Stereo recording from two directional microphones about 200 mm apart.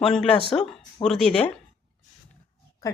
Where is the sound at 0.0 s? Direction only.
Centre (ahead or behind).